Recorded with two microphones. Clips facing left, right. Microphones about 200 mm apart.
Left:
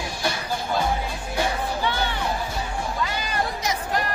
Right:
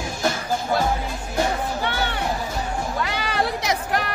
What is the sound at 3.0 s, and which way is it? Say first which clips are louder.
Music: right 3 dB; 70° right (ahead or behind).